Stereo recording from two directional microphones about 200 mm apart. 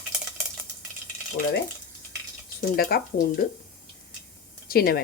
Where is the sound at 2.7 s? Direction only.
50° left (ahead or behind).